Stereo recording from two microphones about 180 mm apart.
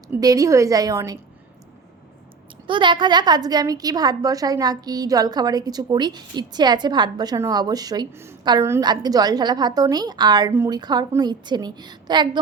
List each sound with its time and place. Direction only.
0.2 s a woman's voice: 20° right (ahead or behind)
2.6 s a woman's voice: 25° right (ahead or behind)